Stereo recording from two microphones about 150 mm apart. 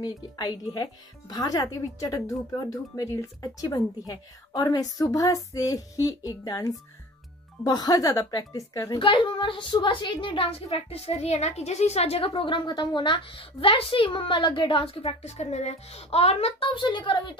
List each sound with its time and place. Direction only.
0.0 s a woman's voice: 25° left (ahead or behind)
9.0 s a woman's voice: 35° left (ahead or behind)